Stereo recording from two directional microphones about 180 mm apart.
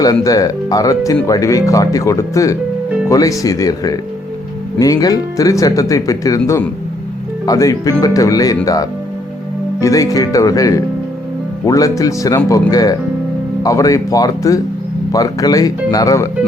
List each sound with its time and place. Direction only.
0.0 s speech: 20° left (ahead or behind)